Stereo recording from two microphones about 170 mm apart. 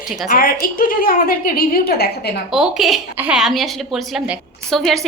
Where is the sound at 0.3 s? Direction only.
60° left (ahead or behind).